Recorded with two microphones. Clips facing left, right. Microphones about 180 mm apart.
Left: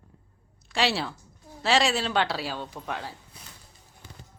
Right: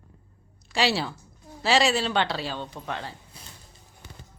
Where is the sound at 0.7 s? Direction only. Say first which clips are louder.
Right 1 dB; centre (ahead or behind).